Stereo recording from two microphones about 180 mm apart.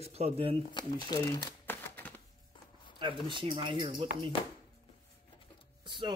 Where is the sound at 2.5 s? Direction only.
25° left (ahead or behind).